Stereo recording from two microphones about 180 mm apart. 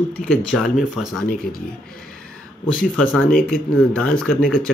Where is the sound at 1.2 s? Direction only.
55° left (ahead or behind).